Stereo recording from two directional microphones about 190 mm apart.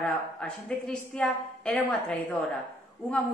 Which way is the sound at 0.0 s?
5° left (ahead or behind).